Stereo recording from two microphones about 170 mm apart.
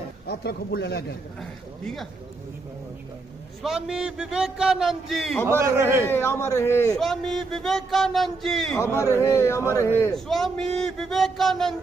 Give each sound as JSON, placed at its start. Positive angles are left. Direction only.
{"t": 0.3, "sound": "a man's voice", "side_deg": 70}
{"t": 1.4, "sound": "a man's voice", "side_deg": 0}
{"t": 3.6, "sound": "a man's voice", "side_deg": -5}
{"t": 5.5, "sound": "a man's voice", "side_deg": -15}
{"t": 6.0, "sound": "a man's voice", "side_deg": 15}
{"t": 7.0, "sound": "a man's voice", "side_deg": 0}
{"t": 8.7, "sound": "a man's voice", "side_deg": 15}
{"t": 10.1, "sound": "a man's voice", "side_deg": 0}